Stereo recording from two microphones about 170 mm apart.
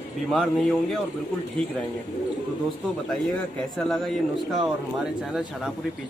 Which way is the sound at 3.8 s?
Centre (ahead or behind).